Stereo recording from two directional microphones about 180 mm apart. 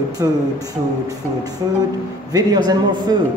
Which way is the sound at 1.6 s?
20° right (ahead or behind).